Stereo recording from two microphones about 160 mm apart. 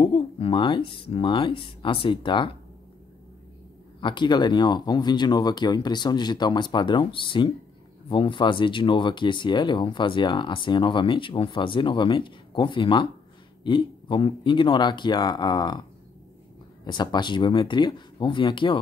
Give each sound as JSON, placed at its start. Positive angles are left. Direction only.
{"t": 0.0, "sound": "speech", "side_deg": 35}
{"t": 4.0, "sound": "speech", "side_deg": 30}
{"t": 16.8, "sound": "speech", "side_deg": 25}